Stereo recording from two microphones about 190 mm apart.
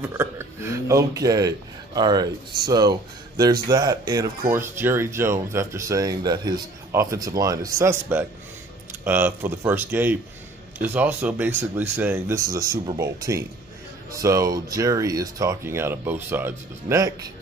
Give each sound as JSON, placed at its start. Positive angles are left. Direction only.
{"t": 0.1, "sound": "speech", "side_deg": -15}